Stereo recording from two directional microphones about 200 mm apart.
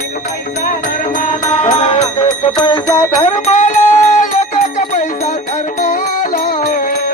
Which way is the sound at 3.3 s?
35° left (ahead or behind).